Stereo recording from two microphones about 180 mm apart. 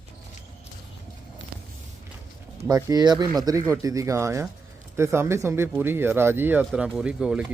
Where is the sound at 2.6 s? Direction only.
20° right (ahead or behind).